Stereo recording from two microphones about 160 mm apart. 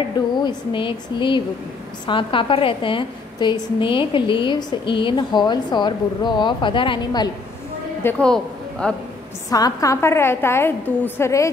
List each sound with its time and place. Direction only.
0.4 s a woman's voice: 30° left (ahead or behind)
8.0 s speech: 10° left (ahead or behind)
9.5 s a woman's voice: 20° left (ahead or behind)